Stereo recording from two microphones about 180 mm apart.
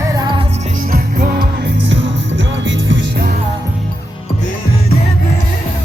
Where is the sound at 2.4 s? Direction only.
90° right.